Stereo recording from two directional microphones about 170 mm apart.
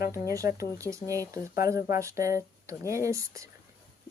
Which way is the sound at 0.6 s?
20° right (ahead or behind).